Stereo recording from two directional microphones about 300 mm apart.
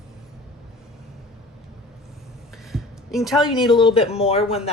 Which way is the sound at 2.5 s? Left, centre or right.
Centre.